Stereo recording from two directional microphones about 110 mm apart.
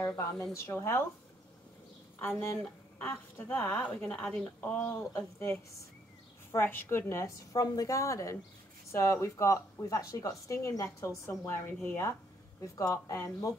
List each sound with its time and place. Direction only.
0.0 s speech: 30° left (ahead or behind)
2.1 s speech: 20° left (ahead or behind)